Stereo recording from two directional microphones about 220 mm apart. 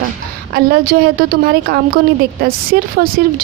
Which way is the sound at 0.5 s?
45° right (ahead or behind).